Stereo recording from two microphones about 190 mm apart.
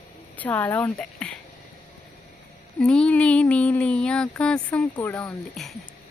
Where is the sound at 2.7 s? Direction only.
5° left (ahead or behind).